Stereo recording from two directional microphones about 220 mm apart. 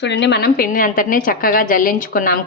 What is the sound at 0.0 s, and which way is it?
A woman's voice, 50° left (ahead or behind).